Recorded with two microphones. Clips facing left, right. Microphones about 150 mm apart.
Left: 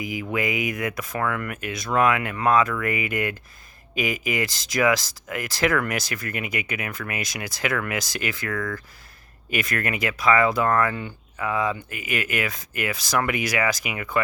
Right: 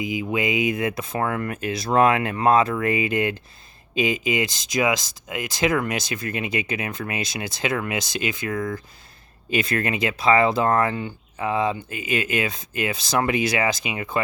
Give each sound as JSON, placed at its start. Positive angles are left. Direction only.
{"t": 0.0, "sound": "speech", "side_deg": -20}